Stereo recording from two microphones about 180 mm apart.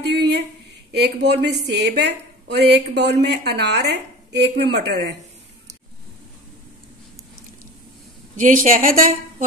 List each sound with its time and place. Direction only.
0.1 s a sound: 70° right (ahead or behind)
0.9 s a woman's voice: 65° right (ahead or behind)
8.4 s a woman's voice: 45° right (ahead or behind)